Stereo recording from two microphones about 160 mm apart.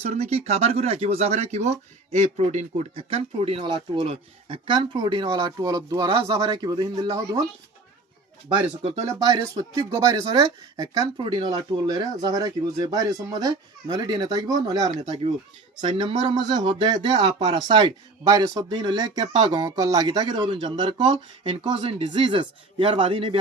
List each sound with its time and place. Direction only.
0.0 s speech: 45° right (ahead or behind); by 7.4 s 25° right (ahead or behind)
8.5 s speech: 40° right (ahead or behind)
9.0 s speech: 25° right (ahead or behind)